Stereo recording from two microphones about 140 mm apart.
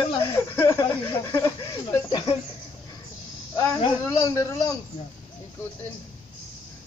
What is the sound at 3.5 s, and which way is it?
Snake, 20° left (ahead or behind).